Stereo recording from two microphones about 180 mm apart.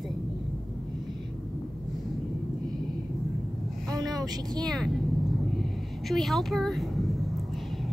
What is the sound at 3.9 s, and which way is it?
Speech, 20° right (ahead or behind).